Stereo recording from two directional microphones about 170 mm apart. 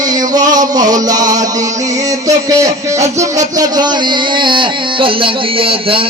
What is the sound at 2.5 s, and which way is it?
Music, 20° right (ahead or behind).